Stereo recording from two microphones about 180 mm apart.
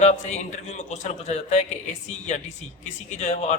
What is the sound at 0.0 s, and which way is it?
A man's voice, 40° left (ahead or behind).